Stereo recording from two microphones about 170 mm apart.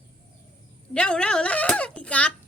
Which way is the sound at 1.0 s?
5° left (ahead or behind).